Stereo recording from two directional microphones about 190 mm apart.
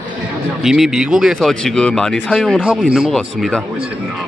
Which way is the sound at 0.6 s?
Centre (ahead or behind).